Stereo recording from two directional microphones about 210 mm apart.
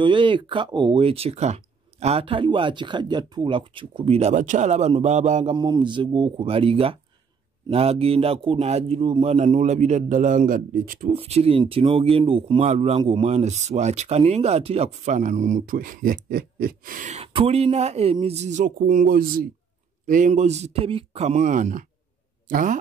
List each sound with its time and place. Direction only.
0.0 s speech: 25° right (ahead or behind)
5.6 s speech: 20° right (ahead or behind); by 11.1 s 40° right (ahead or behind)
11.1 s speech: 30° right (ahead or behind)